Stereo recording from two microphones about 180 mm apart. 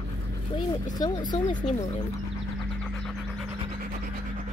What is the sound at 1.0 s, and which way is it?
Speech, 25° left (ahead or behind).